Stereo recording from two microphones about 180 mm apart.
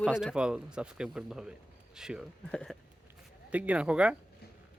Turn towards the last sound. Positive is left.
turn(degrees=-5)  # may be behind; listen again after turning